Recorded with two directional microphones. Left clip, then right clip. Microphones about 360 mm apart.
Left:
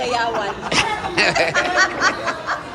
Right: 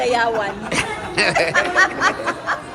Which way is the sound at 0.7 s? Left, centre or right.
Centre.